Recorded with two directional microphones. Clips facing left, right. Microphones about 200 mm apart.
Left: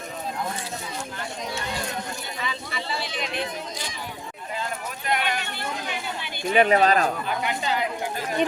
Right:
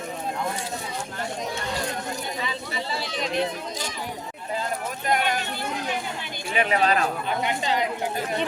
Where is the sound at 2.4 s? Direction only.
35° right (ahead or behind).